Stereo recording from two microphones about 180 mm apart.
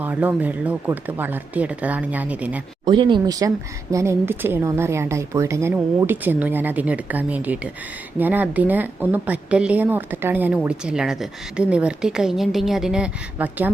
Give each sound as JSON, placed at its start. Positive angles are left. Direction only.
{"t": 0.0, "sound": "a woman's voice", "side_deg": -10}
{"t": 2.8, "sound": "a woman's voice", "side_deg": -25}